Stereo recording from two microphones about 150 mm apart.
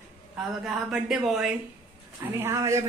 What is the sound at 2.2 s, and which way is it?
Speech, 15° right (ahead or behind).